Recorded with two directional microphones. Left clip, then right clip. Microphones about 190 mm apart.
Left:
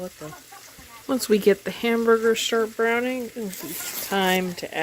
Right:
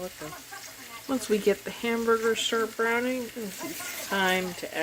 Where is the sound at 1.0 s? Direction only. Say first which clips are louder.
Left 6 dB; 45° left (ahead or behind).